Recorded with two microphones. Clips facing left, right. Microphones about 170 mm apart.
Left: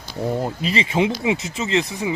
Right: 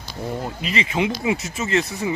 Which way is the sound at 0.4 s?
35° left (ahead or behind).